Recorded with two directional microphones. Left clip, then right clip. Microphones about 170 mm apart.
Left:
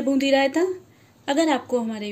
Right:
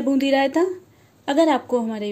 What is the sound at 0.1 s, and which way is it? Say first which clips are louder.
A woman's voice: right 1 dB; 25° right (ahead or behind).